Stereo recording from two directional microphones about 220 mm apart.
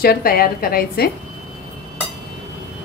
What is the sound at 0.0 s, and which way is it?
A woman's voice, 45° left (ahead or behind).